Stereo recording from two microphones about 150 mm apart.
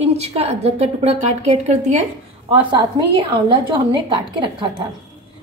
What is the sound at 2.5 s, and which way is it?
A woman's voice, 35° right (ahead or behind).